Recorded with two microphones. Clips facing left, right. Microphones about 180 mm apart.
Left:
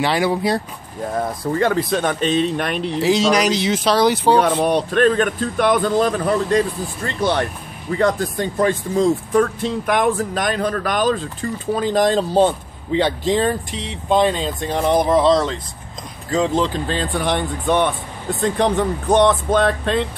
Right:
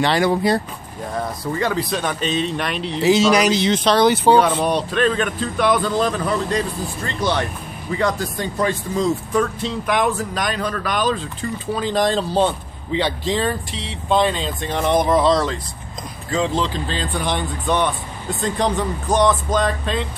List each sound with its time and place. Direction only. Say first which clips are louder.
0.0 s speech: right 1 dB; 5° left (ahead or behind)
1.2 s speech: left 4 dB; 50° left (ahead or behind)
3.0 s speech: right 2 dB; 5° right (ahead or behind)
4.4 s speech: left 1 dB; 50° left (ahead or behind); by 15.6 s 25° left (ahead or behind)
16.3 s speech: left 3 dB; 45° left (ahead or behind); by 20.1 s 65° left (ahead or behind)